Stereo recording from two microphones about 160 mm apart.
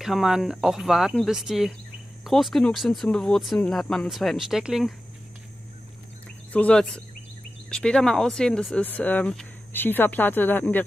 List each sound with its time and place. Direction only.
0.0 s speech: 5° right (ahead or behind)
6.2 s a sound: 10° left (ahead or behind)
7.7 s speech: 5° left (ahead or behind)